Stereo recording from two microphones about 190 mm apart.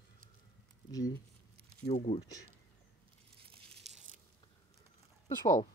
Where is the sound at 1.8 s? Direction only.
35° left (ahead or behind).